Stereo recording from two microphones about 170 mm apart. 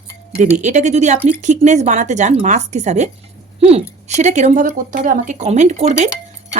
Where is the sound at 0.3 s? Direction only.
40° right (ahead or behind).